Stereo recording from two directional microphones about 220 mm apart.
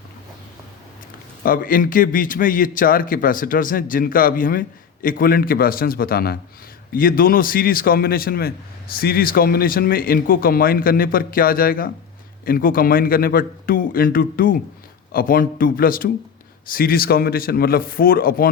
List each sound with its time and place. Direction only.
1.5 s a man's voice: 40° left (ahead or behind)